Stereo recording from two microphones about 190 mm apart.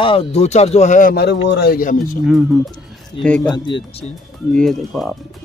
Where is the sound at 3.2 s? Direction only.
5° left (ahead or behind).